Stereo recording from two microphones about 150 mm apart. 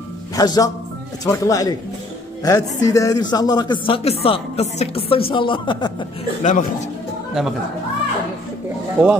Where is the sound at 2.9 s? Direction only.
25° left (ahead or behind).